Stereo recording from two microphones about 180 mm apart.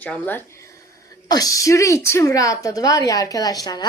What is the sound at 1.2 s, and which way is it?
A woman's voice, 20° left (ahead or behind).